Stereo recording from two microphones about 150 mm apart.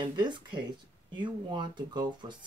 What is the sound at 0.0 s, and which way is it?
Speech, 30° right (ahead or behind).